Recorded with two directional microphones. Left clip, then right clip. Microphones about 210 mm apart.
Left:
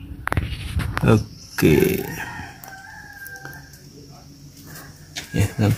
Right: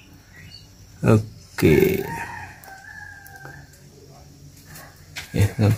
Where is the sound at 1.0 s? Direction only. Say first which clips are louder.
Even; 5° right (ahead or behind).